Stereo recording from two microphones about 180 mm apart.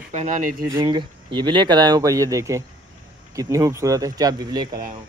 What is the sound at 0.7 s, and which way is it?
Speech, 25° right (ahead or behind).